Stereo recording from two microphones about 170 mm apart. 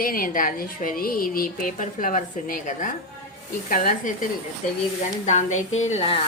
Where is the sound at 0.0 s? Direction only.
55° left (ahead or behind).